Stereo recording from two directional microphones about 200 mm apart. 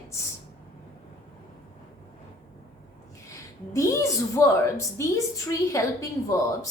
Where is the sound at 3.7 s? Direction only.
15° left (ahead or behind).